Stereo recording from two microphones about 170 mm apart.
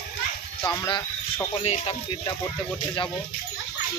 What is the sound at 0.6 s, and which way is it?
Speech, 25° left (ahead or behind).